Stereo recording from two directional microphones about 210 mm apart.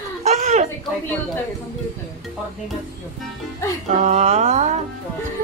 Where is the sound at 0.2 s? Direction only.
30° right (ahead or behind).